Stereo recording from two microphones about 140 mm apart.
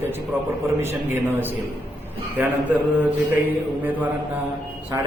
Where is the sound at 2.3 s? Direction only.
10° right (ahead or behind).